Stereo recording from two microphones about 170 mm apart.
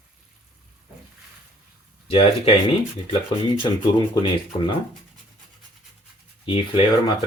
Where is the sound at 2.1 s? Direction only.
35° left (ahead or behind).